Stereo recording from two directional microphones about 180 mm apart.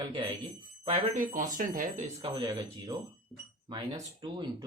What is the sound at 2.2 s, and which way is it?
Speech, 25° right (ahead or behind).